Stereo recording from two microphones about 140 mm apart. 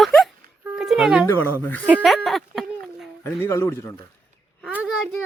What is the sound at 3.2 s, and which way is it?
Speech, 20° left (ahead or behind).